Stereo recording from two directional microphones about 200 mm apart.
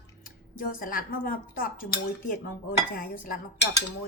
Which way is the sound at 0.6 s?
45° left (ahead or behind).